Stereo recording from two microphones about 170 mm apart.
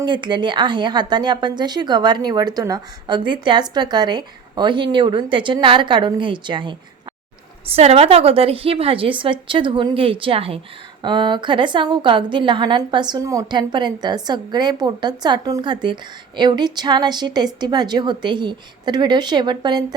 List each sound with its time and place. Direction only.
0.0 s a woman's voice: 25° right (ahead or behind)